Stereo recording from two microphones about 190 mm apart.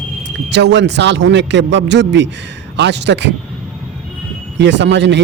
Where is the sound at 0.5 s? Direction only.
65° right (ahead or behind).